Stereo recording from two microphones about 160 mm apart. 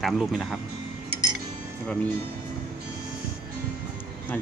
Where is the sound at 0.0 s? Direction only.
Centre (ahead or behind).